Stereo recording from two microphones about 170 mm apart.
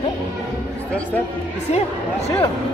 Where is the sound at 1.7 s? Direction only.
40° left (ahead or behind).